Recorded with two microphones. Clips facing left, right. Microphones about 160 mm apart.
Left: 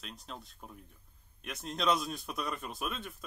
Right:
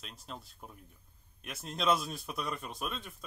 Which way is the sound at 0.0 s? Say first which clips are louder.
Even; centre (ahead or behind).